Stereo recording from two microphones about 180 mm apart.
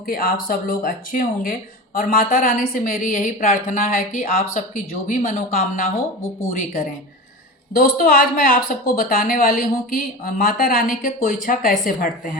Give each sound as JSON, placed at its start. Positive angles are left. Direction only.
{"t": 0.1, "sound": "speech", "side_deg": 55}
{"t": 7.8, "sound": "a woman's voice", "side_deg": 60}